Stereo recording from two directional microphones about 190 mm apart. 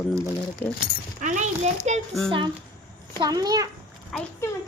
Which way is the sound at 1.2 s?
40° right (ahead or behind).